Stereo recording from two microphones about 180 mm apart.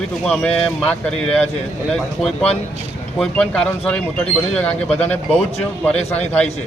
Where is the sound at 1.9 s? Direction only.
Centre (ahead or behind).